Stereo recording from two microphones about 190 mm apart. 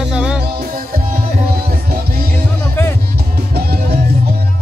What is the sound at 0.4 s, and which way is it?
Music, 50° right (ahead or behind).